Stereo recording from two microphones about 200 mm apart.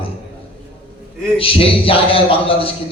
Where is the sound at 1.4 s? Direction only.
25° left (ahead or behind).